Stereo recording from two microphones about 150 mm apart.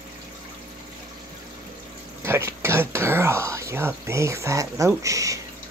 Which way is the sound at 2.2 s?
15° right (ahead or behind).